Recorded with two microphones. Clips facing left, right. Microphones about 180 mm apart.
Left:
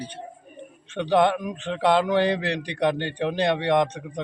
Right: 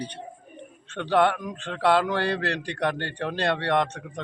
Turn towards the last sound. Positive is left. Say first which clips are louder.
# left 3 dB
turn(degrees=15)  # may be behind; listen again after turning